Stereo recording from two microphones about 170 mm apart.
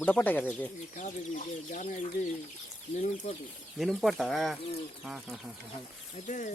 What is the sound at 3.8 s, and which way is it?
Speech, centre (ahead or behind).